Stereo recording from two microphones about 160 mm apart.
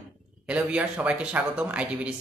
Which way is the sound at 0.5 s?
5° right (ahead or behind).